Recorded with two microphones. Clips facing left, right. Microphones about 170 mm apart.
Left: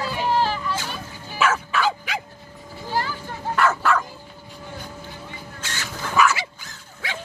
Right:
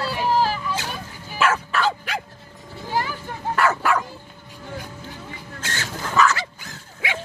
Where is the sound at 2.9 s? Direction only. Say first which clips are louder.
Right 1 dB; 15° right (ahead or behind).